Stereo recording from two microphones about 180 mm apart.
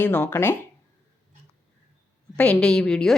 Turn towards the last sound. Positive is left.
turn(degrees=5)  # may be behind; listen again after turning